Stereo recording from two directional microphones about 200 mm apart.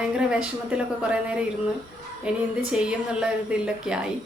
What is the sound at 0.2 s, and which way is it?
A woman's voice, 5° right (ahead or behind).